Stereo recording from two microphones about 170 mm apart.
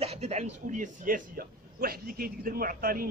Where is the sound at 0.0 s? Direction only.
40° right (ahead or behind).